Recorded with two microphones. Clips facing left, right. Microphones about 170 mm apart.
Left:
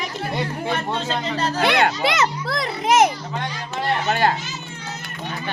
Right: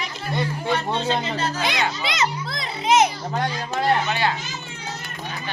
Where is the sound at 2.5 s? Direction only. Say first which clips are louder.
Left 1 dB; 65° left (ahead or behind).